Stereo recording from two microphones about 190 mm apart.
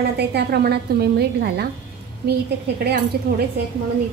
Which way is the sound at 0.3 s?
60° right (ahead or behind).